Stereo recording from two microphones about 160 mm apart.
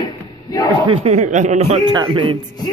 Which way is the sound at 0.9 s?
45° right (ahead or behind).